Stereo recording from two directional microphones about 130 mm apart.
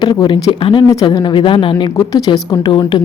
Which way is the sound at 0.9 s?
30° left (ahead or behind).